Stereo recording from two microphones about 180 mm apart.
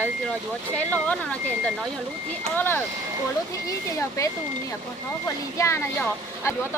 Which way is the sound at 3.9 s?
15° left (ahead or behind).